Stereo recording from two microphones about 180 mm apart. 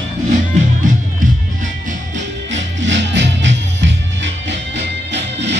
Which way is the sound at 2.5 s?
90° right.